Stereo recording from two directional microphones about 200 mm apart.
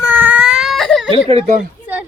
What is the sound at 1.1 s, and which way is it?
Speech, 30° right (ahead or behind).